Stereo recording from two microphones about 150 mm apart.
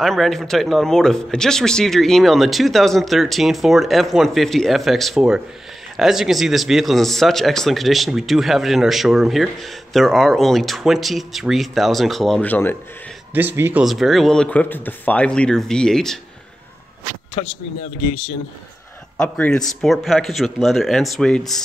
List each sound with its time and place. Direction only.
0.0 s speech: centre (ahead or behind)
13.3 s speech: 15° right (ahead or behind)
13.8 s speech: centre (ahead or behind)
17.4 s speech: 40° left (ahead or behind)
19.1 s speech: 10° left (ahead or behind)